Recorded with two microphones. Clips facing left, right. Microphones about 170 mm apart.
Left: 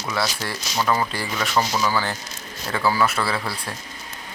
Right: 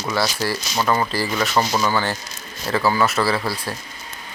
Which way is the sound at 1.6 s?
25° right (ahead or behind).